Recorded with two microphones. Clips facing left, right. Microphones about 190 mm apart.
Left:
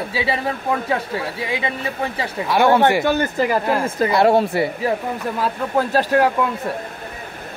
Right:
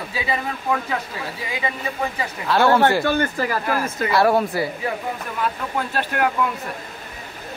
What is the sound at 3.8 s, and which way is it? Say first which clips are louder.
Speech: left 2 dB; 30° left (ahead or behind).